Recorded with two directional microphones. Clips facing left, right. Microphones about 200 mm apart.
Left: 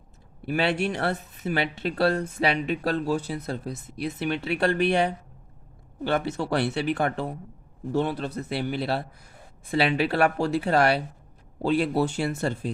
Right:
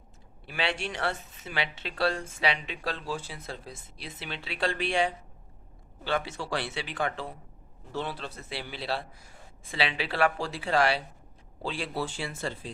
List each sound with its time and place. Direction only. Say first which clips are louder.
0.4 s a man's voice: left 8 dB; 45° left (ahead or behind)
1.9 s a man's voice: left 6 dB; 55° left (ahead or behind)
3.7 s speech: left 12 dB; 55° left (ahead or behind)
6.1 s a man's voice: left 5 dB; 60° left (ahead or behind)